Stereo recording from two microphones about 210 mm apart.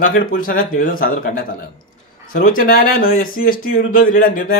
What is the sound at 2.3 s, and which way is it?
A man's voice, 40° left (ahead or behind).